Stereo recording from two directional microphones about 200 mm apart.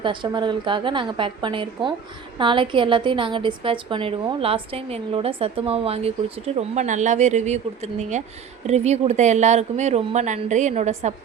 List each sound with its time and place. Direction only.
0.0 s a woman's voice: 25° right (ahead or behind)